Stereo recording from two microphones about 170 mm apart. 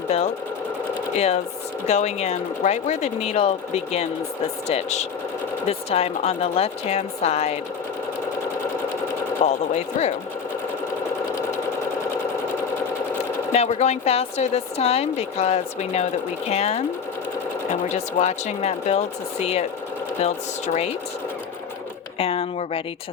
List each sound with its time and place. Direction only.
1.1 s a woman's voice: 40° left (ahead or behind)
9.4 s a woman's voice: 40° left (ahead or behind)
13.5 s a woman's voice: 40° left (ahead or behind)
22.2 s a woman's voice: 35° left (ahead or behind)